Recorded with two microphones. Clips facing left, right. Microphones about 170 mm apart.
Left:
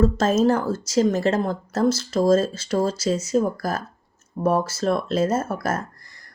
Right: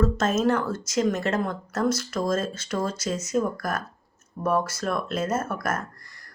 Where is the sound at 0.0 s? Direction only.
30° left (ahead or behind).